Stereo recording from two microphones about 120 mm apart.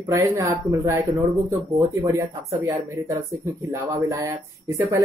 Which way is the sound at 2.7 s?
30° right (ahead or behind).